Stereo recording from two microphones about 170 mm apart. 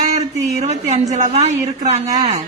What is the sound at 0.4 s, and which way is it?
A man's voice, 40° right (ahead or behind).